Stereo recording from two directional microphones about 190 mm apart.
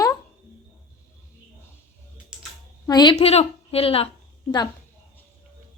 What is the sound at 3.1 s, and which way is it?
Speech, 30° left (ahead or behind).